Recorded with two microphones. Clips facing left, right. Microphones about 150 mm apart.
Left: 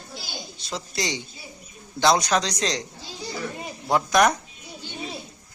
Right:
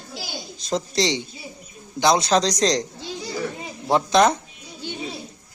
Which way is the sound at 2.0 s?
25° right (ahead or behind).